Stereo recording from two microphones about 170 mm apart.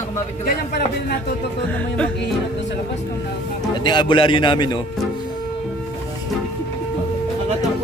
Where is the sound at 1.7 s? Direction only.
5° left (ahead or behind).